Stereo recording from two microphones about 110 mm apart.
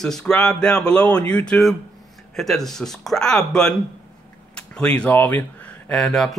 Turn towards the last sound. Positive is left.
turn(degrees=5)  # may be behind; listen again after turning